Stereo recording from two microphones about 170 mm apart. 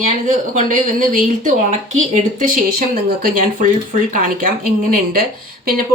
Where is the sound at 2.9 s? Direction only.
60° right (ahead or behind).